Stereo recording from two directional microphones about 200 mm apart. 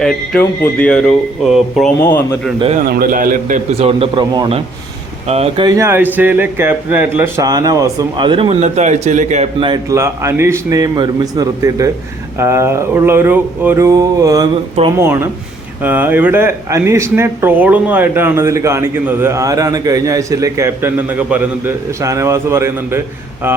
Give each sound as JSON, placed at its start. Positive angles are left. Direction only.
{"t": 0.0, "sound": "speech", "side_deg": 5}
{"t": 2.0, "sound": "speech", "side_deg": 15}
{"t": 2.8, "sound": "a man's voice", "side_deg": -50}
{"t": 3.7, "sound": "speech", "side_deg": -30}
{"t": 5.7, "sound": "speech", "side_deg": -10}
{"t": 9.6, "sound": "speech", "side_deg": -20}